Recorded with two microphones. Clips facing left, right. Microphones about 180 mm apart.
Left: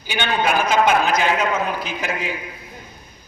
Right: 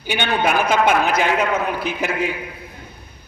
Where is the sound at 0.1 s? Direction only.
55° right (ahead or behind).